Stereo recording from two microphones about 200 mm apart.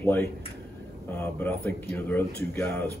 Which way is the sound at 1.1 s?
10° left (ahead or behind).